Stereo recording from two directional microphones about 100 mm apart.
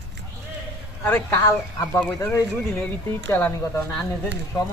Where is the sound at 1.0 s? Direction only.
25° left (ahead or behind).